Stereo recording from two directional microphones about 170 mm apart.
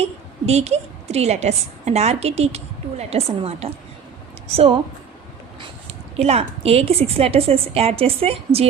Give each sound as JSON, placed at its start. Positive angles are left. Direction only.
{"t": 0.0, "sound": "a woman's voice", "side_deg": -40}